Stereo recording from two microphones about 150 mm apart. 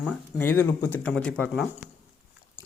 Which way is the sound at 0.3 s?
15° left (ahead or behind).